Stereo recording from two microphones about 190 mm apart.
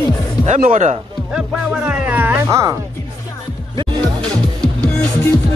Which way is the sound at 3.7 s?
20° right (ahead or behind).